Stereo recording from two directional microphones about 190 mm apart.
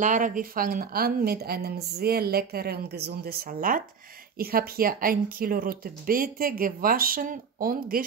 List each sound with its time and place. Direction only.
0.0 s speech: 45° right (ahead or behind)